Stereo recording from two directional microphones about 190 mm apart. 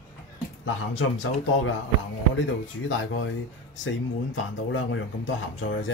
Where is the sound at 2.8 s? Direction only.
80° left.